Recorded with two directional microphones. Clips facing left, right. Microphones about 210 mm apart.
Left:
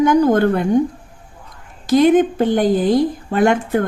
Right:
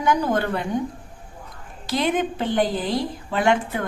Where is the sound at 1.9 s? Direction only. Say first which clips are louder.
Left 11 dB; 45° left (ahead or behind).